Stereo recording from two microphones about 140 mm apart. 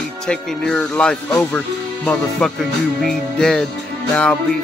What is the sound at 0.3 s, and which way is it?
Music, 5° left (ahead or behind).